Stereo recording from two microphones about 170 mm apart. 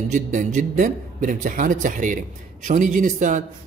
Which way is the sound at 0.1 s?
50° right (ahead or behind).